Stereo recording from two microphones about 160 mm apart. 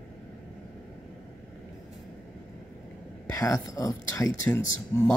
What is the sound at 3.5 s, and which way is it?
Speech, 20° left (ahead or behind).